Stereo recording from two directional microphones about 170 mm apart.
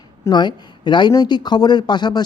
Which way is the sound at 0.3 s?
25° left (ahead or behind).